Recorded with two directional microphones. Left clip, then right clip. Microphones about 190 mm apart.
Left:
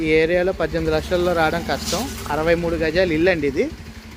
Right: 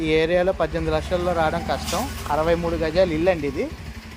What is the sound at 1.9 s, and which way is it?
Speech, 15° left (ahead or behind).